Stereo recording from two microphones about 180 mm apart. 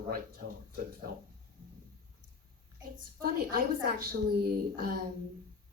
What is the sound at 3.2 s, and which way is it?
Speech, 55° right (ahead or behind).